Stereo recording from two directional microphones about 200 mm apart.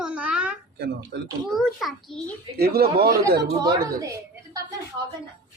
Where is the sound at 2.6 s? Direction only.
50° right (ahead or behind).